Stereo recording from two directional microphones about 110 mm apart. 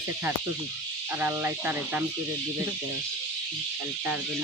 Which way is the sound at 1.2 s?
20° right (ahead or behind).